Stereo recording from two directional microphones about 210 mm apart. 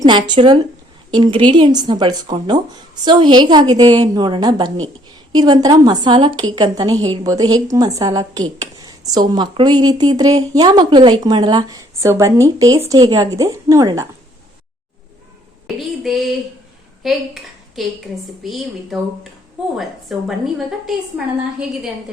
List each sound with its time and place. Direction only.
0.0 s a woman's voice: 20° right (ahead or behind)
15.6 s a woman's voice: centre (ahead or behind)